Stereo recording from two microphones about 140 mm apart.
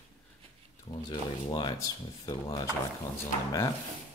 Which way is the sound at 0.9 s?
30° left (ahead or behind).